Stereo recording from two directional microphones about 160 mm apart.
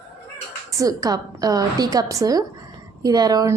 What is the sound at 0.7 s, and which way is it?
A woman's voice, 20° right (ahead or behind).